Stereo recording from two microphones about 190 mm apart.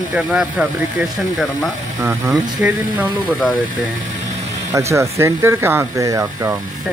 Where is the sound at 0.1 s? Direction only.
5° right (ahead or behind).